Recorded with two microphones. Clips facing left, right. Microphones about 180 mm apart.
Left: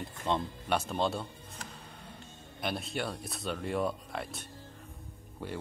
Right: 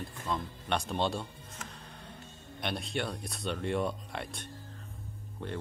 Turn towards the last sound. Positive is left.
turn(degrees=5)  # may be behind; listen again after turning